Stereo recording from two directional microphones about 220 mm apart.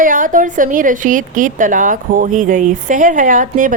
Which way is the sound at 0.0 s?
40° right (ahead or behind).